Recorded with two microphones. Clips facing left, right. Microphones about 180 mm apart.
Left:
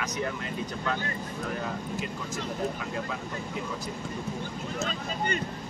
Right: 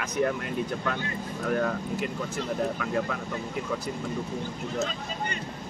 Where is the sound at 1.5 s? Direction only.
55° right (ahead or behind).